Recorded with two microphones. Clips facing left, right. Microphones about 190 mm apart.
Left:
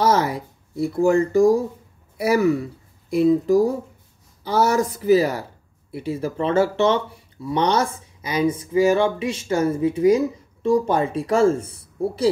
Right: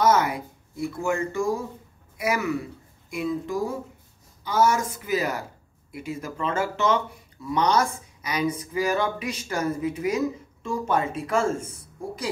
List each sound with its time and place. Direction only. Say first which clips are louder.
0.0 s speech: left 2 dB; 30° left (ahead or behind)